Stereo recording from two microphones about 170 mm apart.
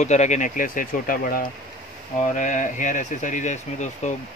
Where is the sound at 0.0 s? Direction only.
45° left (ahead or behind).